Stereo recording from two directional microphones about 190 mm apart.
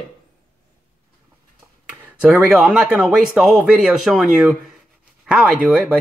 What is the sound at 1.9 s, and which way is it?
Speech, 10° right (ahead or behind).